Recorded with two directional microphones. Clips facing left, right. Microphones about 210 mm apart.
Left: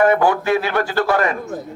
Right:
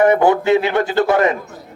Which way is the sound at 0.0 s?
20° right (ahead or behind).